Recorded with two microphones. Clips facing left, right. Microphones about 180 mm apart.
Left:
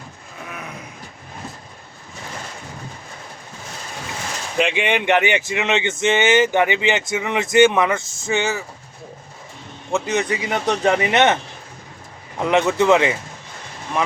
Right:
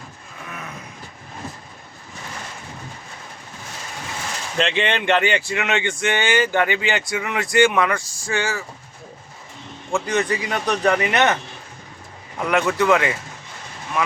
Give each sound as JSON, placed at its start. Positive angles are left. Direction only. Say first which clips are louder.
{"t": 4.5, "sound": "speech", "louder": "left 2 dB", "side_deg": 15}
{"t": 9.9, "sound": "speech", "louder": "even", "side_deg": 20}
{"t": 12.4, "sound": "speech", "louder": "left 3 dB", "side_deg": 25}